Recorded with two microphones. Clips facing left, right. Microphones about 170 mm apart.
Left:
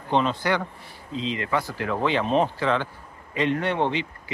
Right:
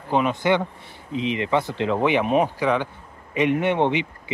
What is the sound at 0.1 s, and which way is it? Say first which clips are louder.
Speech: right 3 dB; 15° right (ahead or behind).